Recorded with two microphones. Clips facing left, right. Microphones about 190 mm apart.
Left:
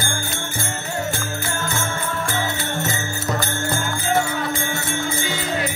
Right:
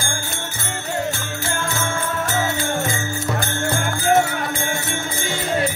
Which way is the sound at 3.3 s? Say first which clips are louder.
Right 1 dB; 55° right (ahead or behind).